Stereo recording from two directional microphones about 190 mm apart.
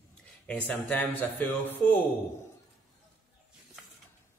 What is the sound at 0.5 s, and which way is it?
Speech, 10° left (ahead or behind).